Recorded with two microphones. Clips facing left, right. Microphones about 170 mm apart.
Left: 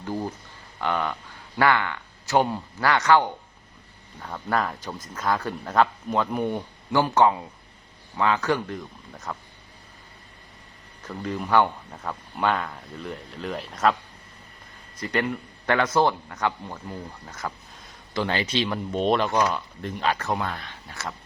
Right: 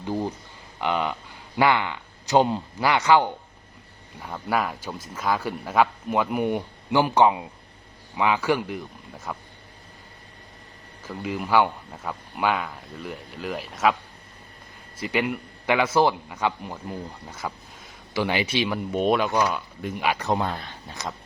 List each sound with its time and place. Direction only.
0.0 s speech: 15° right (ahead or behind)
11.0 s speech: 10° right (ahead or behind)
14.9 s speech: 10° right (ahead or behind); by 20.7 s 30° right (ahead or behind)
20.9 s speech: 15° right (ahead or behind)